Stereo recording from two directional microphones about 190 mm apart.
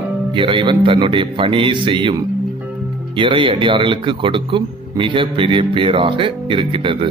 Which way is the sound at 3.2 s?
25° right (ahead or behind).